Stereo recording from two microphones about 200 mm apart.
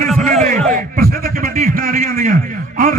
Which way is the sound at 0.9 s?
50° right (ahead or behind).